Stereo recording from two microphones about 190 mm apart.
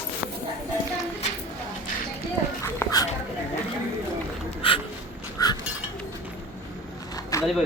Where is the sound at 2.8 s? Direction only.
10° left (ahead or behind).